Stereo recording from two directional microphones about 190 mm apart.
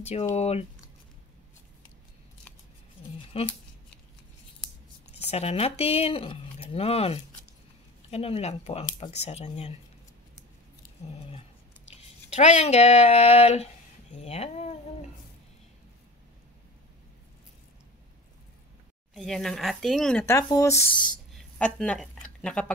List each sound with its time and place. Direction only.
0.0 s speech: 35° left (ahead or behind)
3.3 s speech: 30° left (ahead or behind)
5.2 s speech: 35° left (ahead or behind)
11.3 s speech: 35° left (ahead or behind)
14.2 s a sound: 35° left (ahead or behind)
19.1 s speech: centre (ahead or behind)
20.2 s speech: 15° left (ahead or behind)
21.3 s a sound: 5° left (ahead or behind)